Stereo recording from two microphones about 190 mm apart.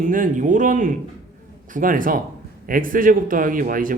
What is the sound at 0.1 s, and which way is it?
Speech, 45° right (ahead or behind).